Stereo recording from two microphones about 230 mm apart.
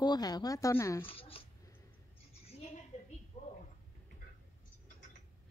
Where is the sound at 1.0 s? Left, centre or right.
Left.